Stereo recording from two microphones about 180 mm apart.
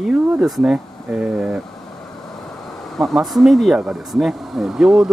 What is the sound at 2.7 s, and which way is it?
Speech, centre (ahead or behind).